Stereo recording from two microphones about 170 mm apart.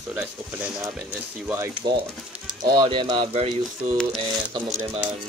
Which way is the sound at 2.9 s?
30° right (ahead or behind).